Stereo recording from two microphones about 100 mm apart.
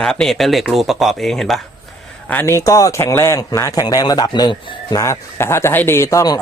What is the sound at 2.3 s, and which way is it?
Speech, 25° left (ahead or behind).